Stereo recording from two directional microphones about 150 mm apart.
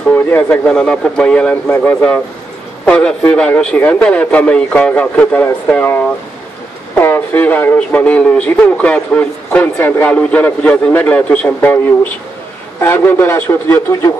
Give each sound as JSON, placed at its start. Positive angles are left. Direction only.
{"t": 0.1, "sound": "speech", "side_deg": 10}